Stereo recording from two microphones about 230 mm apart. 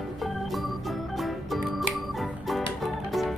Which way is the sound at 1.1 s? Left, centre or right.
Centre.